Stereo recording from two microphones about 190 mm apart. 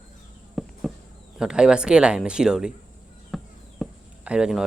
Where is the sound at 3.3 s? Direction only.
5° right (ahead or behind).